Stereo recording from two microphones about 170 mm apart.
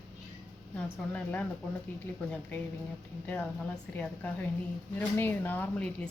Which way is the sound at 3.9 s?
10° left (ahead or behind).